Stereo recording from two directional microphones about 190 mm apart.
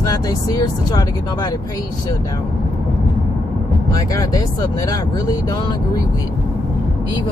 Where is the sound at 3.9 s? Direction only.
20° left (ahead or behind).